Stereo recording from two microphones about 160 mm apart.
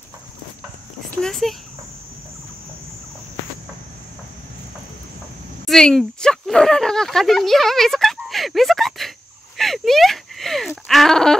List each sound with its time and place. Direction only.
1.2 s a child's voice: centre (ahead or behind)
5.7 s speech: 5° left (ahead or behind)
9.6 s a sound: centre (ahead or behind)
10.9 s speech: centre (ahead or behind)